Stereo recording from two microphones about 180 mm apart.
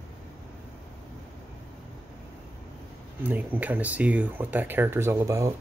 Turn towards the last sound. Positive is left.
turn(degrees=-15)  # may be behind; listen again after turning